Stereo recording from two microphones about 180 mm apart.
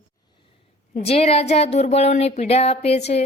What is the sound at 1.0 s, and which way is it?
A woman's voice, 35° left (ahead or behind).